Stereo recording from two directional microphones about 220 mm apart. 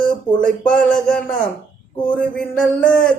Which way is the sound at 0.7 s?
5° left (ahead or behind).